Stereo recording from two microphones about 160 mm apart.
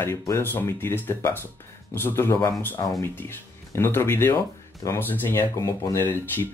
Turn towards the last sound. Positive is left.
turn(degrees=15)  # may be behind; listen again after turning